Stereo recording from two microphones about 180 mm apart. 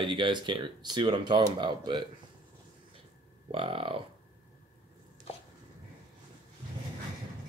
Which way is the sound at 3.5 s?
30° right (ahead or behind).